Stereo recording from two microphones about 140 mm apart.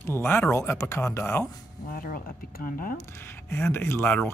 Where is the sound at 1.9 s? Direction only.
90° left.